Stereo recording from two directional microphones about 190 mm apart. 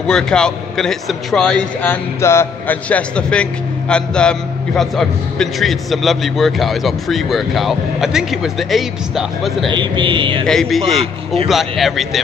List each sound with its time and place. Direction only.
0.0 s a man's voice: 5° left (ahead or behind)
9.7 s speech: 25° right (ahead or behind)
10.4 s a man's voice: centre (ahead or behind)